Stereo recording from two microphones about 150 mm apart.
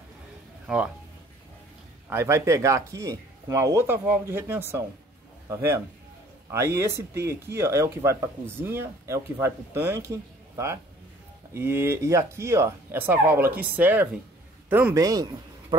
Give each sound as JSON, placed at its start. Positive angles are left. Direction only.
{"t": 2.0, "sound": "a man's voice", "side_deg": -15}